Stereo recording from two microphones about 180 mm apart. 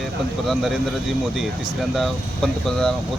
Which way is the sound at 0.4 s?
Centre (ahead or behind).